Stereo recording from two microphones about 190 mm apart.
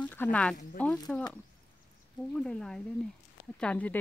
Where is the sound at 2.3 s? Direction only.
5° left (ahead or behind).